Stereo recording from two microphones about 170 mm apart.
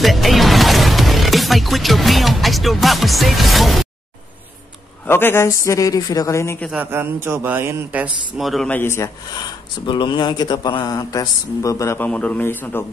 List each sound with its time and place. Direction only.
0.0 s speech: centre (ahead or behind)
5.0 s a man's voice: 15° left (ahead or behind)
6.7 s a man's voice: 10° right (ahead or behind); by 12.8 s 10° left (ahead or behind)